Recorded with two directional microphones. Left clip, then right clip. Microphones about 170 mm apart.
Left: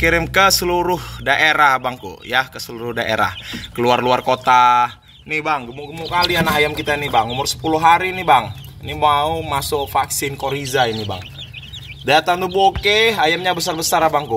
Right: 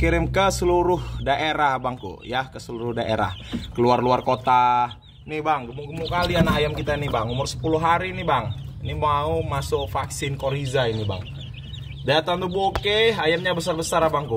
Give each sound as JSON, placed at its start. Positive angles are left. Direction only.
{"t": 0.0, "sound": "speech", "side_deg": 0}
{"t": 5.3, "sound": "speech", "side_deg": 30}